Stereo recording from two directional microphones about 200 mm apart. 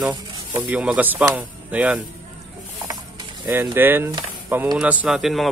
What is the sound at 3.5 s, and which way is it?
A man's voice, 10° right (ahead or behind).